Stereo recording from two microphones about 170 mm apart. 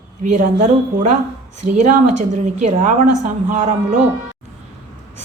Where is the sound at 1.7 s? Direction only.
45° right (ahead or behind).